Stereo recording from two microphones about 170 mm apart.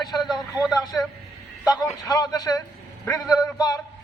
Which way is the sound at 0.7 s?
25° left (ahead or behind).